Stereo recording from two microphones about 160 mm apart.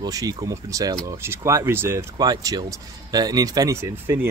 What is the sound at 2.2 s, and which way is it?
Speech, 25° right (ahead or behind).